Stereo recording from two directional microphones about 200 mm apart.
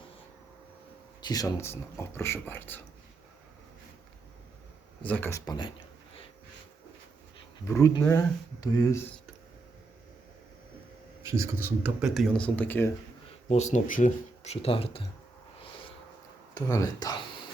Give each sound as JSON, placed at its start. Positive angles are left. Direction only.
{"t": 1.2, "sound": "speech", "side_deg": 20}
{"t": 5.0, "sound": "speech", "side_deg": 10}
{"t": 5.5, "sound": "speech", "side_deg": 25}
{"t": 7.7, "sound": "speech", "side_deg": 15}
{"t": 11.2, "sound": "speech", "side_deg": -15}
{"t": 13.5, "sound": "speech", "side_deg": 35}
{"t": 16.6, "sound": "speech", "side_deg": 20}